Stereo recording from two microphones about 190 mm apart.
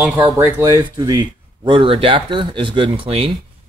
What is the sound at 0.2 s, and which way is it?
Speech, 15° right (ahead or behind).